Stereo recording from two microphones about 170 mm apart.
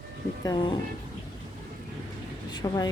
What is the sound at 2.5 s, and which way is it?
Speech, 25° left (ahead or behind).